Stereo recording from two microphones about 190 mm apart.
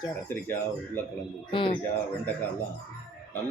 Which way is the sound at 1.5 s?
25° left (ahead or behind).